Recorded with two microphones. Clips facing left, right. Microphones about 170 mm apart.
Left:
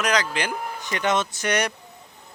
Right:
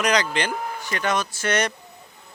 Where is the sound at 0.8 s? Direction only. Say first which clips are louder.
Left 2 dB; 20° left (ahead or behind).